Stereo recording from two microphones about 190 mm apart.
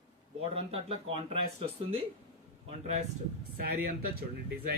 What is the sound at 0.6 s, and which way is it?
Speech, 30° right (ahead or behind).